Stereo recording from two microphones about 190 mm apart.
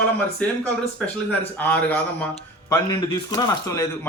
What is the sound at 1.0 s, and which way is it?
A man's voice, 10° left (ahead or behind).